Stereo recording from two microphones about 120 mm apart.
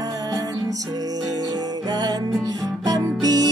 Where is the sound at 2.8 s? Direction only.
35° right (ahead or behind).